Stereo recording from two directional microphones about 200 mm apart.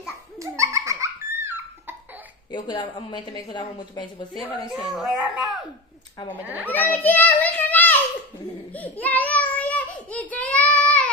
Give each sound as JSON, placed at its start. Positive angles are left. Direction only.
{"t": 0.4, "sound": "laughter", "side_deg": -15}
{"t": 2.5, "sound": "a woman's voice", "side_deg": 20}
{"t": 4.9, "sound": "a child's voice", "side_deg": -5}
{"t": 6.7, "sound": "a child's voice", "side_deg": 10}
{"t": 8.7, "sound": "a sound", "side_deg": 10}